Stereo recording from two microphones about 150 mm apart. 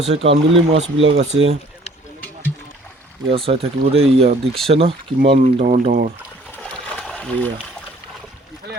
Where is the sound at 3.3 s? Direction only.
40° right (ahead or behind).